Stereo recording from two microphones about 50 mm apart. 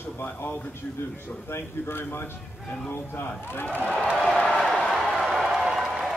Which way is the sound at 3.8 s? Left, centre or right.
Left.